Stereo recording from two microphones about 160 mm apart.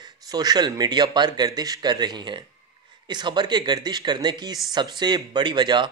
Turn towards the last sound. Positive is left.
turn(degrees=-30)  # may be behind; listen again after turning